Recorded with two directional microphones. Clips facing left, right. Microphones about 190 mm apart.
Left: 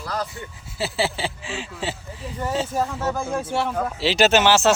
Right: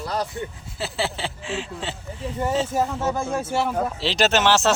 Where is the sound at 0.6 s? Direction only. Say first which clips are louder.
Left 5 dB; centre (ahead or behind).